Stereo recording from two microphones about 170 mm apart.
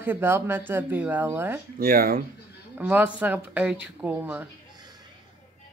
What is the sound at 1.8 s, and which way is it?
Speech, 60° right (ahead or behind).